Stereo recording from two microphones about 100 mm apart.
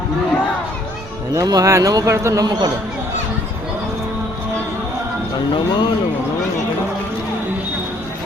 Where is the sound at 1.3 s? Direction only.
35° right (ahead or behind).